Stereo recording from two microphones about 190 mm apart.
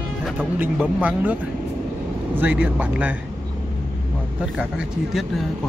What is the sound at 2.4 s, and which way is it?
Speech, 10° right (ahead or behind).